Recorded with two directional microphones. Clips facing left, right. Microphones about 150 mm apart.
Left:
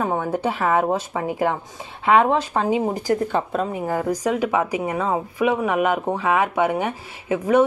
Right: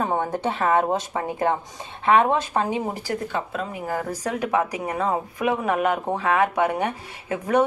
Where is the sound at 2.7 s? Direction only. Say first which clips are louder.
Left 5 dB; 15° left (ahead or behind).